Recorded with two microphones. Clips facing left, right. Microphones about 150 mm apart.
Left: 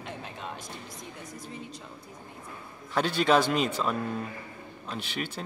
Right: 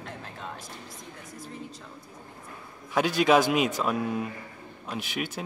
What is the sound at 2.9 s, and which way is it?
Speech, 10° right (ahead or behind).